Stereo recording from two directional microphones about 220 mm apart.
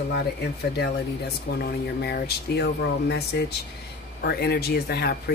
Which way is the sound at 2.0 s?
45° left (ahead or behind).